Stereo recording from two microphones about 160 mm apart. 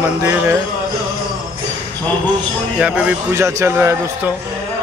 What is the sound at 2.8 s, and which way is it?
Speech, 5° right (ahead or behind).